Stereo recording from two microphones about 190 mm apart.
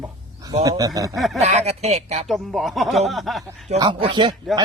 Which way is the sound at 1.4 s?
35° right (ahead or behind).